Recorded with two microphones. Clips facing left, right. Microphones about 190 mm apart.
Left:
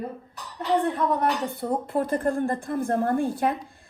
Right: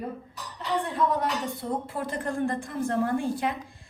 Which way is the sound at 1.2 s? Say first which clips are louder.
Left 4 dB; 60° left (ahead or behind).